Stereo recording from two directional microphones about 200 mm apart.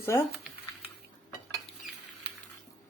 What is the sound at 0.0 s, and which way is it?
Speech, 10° left (ahead or behind).